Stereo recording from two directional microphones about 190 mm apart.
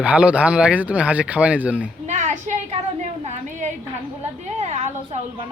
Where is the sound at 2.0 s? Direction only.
40° right (ahead or behind).